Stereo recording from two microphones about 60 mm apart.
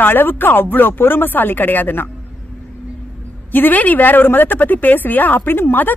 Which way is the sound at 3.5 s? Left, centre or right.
Left.